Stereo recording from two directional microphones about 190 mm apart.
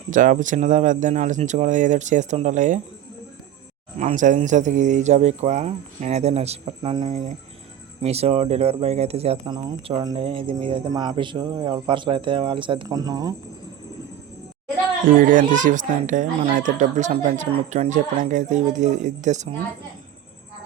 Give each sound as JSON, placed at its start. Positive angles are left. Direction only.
{"t": 0.1, "sound": "speech", "side_deg": -45}
{"t": 3.9, "sound": "speech", "side_deg": -40}
{"t": 15.3, "sound": "speech", "side_deg": -45}